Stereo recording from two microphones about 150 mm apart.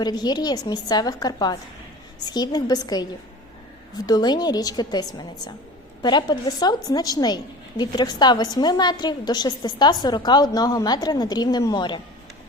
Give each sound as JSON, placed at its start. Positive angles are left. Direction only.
{"t": 0.0, "sound": "a woman's voice", "side_deg": 30}